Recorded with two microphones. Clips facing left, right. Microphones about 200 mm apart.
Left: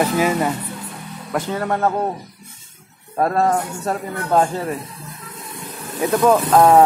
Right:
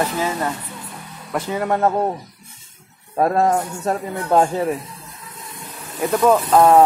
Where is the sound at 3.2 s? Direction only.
15° right (ahead or behind).